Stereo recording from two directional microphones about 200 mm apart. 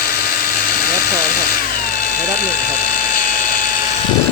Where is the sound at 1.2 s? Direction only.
50° left (ahead or behind).